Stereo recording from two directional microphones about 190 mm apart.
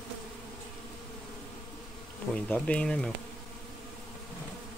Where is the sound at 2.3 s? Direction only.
5° left (ahead or behind).